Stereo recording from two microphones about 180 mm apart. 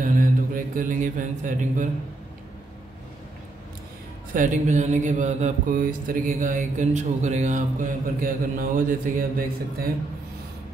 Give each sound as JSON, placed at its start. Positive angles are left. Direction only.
{"t": 0.0, "sound": "mantra", "side_deg": -50}
{"t": 4.3, "sound": "mantra", "side_deg": -45}